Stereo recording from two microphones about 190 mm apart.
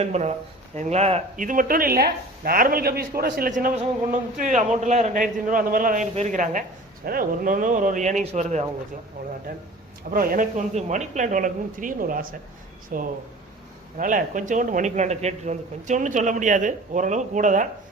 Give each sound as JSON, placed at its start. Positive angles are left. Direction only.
{"t": 0.0, "sound": "speech", "side_deg": -35}
{"t": 9.2, "sound": "speech", "side_deg": -55}